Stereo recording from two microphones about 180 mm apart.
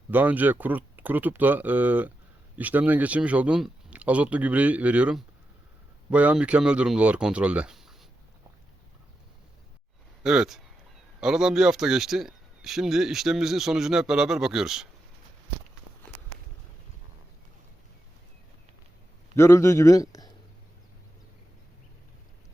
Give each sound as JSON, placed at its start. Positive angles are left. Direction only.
{"t": 0.1, "sound": "speech", "side_deg": -10}
{"t": 10.2, "sound": "speech", "side_deg": -5}
{"t": 19.4, "sound": "a man's voice", "side_deg": 15}